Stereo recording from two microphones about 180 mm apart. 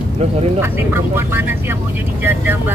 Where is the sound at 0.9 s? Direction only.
15° right (ahead or behind).